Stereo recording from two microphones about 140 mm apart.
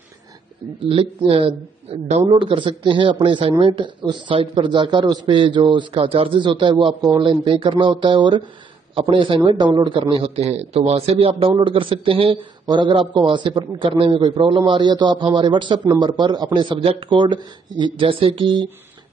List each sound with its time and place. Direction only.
0.8 s a man's voice: 40° right (ahead or behind)
2.3 s a man's voice: 35° right (ahead or behind)